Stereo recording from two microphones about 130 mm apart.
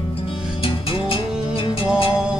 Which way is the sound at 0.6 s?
45° left (ahead or behind).